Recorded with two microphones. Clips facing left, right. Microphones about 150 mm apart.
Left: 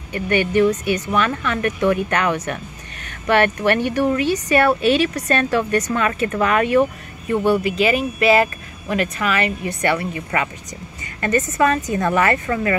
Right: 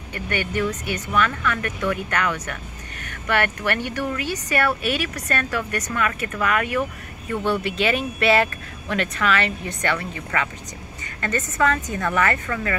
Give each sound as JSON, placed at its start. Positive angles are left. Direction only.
{"t": 0.1, "sound": "speech", "side_deg": 20}
{"t": 7.5, "sound": "speech", "side_deg": 5}
{"t": 9.9, "sound": "a woman's voice", "side_deg": 20}